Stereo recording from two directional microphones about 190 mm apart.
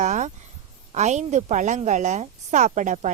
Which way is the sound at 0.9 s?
35° right (ahead or behind).